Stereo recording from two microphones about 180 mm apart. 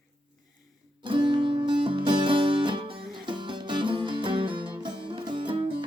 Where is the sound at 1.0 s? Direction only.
25° right (ahead or behind).